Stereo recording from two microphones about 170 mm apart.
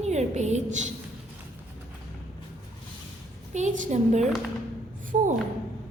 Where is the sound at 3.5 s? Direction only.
45° right (ahead or behind).